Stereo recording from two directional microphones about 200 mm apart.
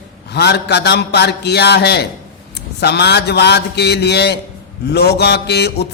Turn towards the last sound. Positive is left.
turn(degrees=55)  # may be behind; listen again after turning